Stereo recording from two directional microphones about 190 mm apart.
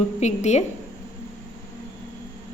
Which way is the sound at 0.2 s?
35° left (ahead or behind).